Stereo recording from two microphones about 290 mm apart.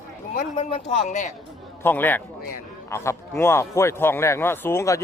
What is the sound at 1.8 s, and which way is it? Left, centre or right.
A man's voice, centre.